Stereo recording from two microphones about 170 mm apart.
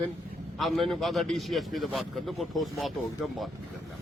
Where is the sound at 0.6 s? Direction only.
Centre (ahead or behind).